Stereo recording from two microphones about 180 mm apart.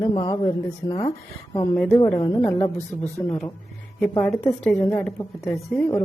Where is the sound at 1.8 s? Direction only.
5° left (ahead or behind).